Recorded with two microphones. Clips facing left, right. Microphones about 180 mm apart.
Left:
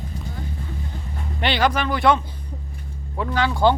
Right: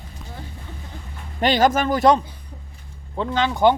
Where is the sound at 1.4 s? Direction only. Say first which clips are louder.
Right 3 dB; 40° right (ahead or behind).